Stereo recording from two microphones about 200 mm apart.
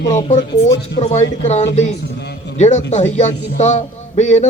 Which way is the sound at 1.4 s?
35° left (ahead or behind).